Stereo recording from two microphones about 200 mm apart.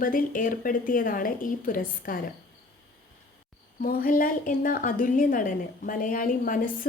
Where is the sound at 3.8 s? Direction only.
45° left (ahead or behind).